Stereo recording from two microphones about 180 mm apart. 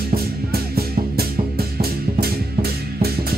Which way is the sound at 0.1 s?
60° right (ahead or behind).